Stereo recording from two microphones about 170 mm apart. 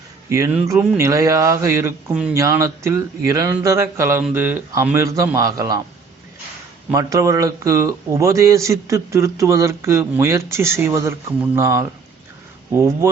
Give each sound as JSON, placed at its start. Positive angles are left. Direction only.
{"t": 0.3, "sound": "a man's voice", "side_deg": -15}
{"t": 6.9, "sound": "a man's voice", "side_deg": -20}